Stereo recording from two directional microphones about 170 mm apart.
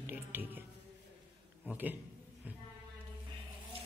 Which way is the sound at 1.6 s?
10° right (ahead or behind).